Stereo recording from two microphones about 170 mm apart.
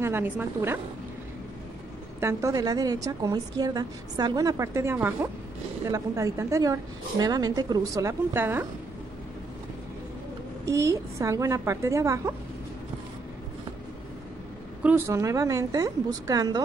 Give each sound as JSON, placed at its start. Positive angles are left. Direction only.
{"t": 0.0, "sound": "a woman's voice", "side_deg": -10}
{"t": 2.1, "sound": "a woman's voice", "side_deg": -15}
{"t": 10.6, "sound": "a woman's voice", "side_deg": -15}
{"t": 14.8, "sound": "a woman's voice", "side_deg": -10}